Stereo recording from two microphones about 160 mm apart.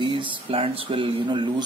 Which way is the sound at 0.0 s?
30° right (ahead or behind).